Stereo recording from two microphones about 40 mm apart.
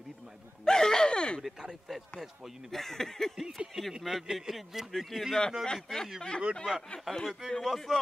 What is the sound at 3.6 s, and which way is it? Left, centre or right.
Speech, right.